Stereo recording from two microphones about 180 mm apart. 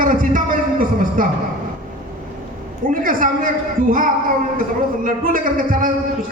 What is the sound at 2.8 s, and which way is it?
A man's voice, 50° right (ahead or behind).